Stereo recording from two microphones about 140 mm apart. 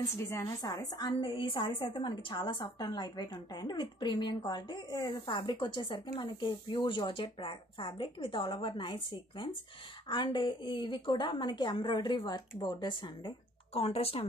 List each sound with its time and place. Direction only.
0.3 s a woman's voice: 20° left (ahead or behind)
10.0 s a woman's voice: 35° left (ahead or behind)
13.7 s speech: 45° left (ahead or behind)